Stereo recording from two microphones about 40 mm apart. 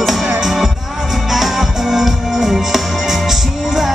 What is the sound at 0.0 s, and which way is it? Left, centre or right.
Music, centre.